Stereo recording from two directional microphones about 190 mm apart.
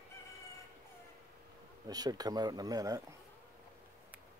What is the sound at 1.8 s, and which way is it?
Speech, 20° right (ahead or behind).